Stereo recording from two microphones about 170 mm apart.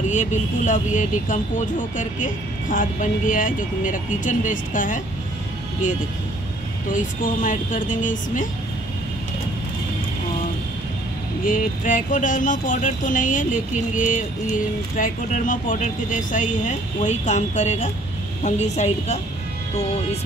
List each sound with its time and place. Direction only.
0.1 s speech: 45° left (ahead or behind)
6.9 s speech: 50° left (ahead or behind)
11.4 s speech: 50° left (ahead or behind)